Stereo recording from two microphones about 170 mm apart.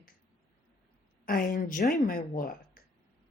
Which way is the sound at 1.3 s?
55° left (ahead or behind).